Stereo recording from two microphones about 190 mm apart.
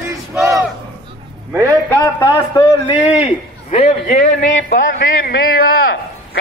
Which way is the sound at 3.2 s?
30° left (ahead or behind).